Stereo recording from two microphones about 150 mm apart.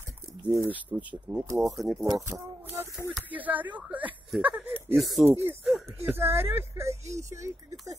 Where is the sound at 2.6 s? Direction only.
15° right (ahead or behind).